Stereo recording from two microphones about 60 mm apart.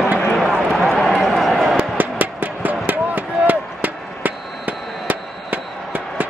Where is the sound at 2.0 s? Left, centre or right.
Right.